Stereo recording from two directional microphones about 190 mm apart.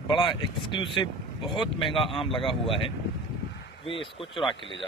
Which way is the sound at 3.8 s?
30° left (ahead or behind).